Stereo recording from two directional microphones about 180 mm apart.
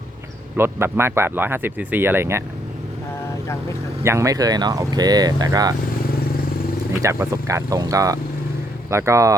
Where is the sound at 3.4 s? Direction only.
15° left (ahead or behind).